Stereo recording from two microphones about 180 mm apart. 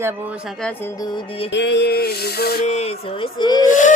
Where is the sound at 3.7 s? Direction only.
45° left (ahead or behind).